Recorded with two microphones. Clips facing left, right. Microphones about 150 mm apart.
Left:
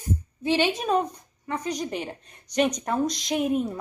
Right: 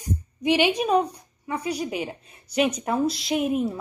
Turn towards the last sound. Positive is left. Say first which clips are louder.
# right 1 dB
turn(degrees=0)  # may be behind; listen again after turning